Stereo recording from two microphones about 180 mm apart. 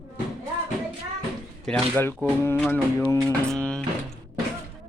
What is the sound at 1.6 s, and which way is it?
Speech, 10° left (ahead or behind).